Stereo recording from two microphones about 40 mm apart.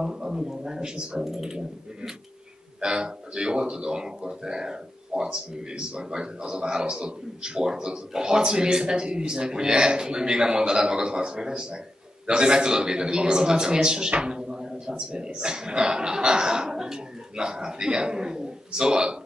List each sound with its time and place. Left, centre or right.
0.0 s a man's voice: centre
2.8 s a man's voice: right